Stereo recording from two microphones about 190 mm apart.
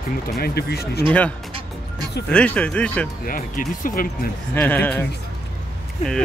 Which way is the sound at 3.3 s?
45° left (ahead or behind).